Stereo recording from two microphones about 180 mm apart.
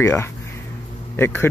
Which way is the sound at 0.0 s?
15° left (ahead or behind).